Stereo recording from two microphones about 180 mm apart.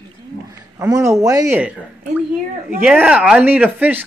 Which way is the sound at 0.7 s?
15° right (ahead or behind).